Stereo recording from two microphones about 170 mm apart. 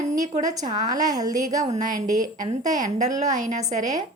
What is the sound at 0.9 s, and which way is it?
Speech, 20° right (ahead or behind).